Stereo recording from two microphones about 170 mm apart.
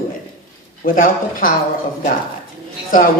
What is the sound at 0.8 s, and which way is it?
Speech, 55° left (ahead or behind).